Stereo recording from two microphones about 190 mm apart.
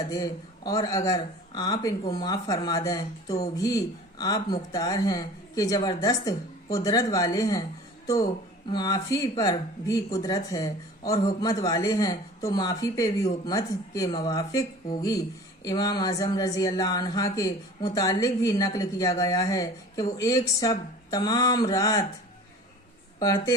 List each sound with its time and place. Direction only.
0.1 s speech: 20° left (ahead or behind)
8.7 s speech: 20° left (ahead or behind)
23.2 s speech: 20° left (ahead or behind)